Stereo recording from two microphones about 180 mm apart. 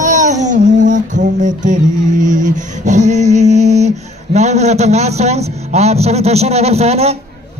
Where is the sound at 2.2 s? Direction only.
45° right (ahead or behind).